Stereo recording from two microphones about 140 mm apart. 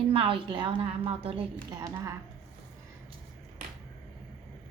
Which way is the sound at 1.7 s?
25° right (ahead or behind).